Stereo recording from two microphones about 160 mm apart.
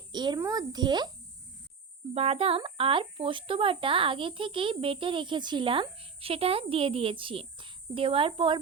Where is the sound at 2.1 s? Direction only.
40° right (ahead or behind).